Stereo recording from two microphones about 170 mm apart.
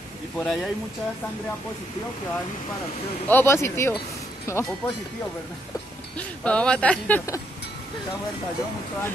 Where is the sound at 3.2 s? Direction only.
15° left (ahead or behind).